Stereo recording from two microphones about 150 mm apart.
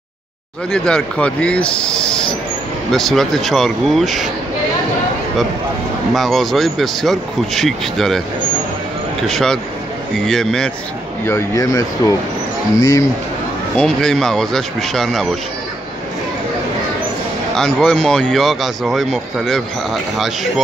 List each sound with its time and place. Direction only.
0.7 s speech: 5° left (ahead or behind)
6.1 s speech: centre (ahead or behind)
9.3 s speech: 5° left (ahead or behind)
11.2 s speech: 20° left (ahead or behind)
13.7 s speech: 5° left (ahead or behind)
17.6 s speech: 5° left (ahead or behind)